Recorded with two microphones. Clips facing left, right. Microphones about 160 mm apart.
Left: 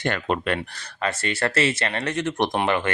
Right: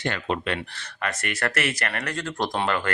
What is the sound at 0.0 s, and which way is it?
Speech, 50° left (ahead or behind).